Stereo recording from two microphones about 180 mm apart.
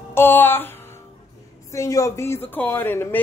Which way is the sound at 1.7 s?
15° left (ahead or behind).